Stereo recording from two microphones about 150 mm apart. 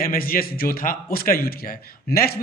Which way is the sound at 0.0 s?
75° left (ahead or behind).